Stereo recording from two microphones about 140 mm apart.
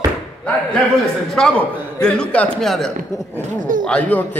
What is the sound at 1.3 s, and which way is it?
A man's voice, 5° left (ahead or behind).